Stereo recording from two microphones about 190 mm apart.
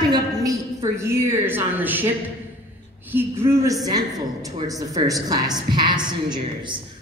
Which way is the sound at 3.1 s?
10° right (ahead or behind).